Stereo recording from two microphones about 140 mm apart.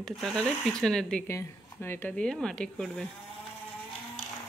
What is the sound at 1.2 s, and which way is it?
Speech, 20° left (ahead or behind).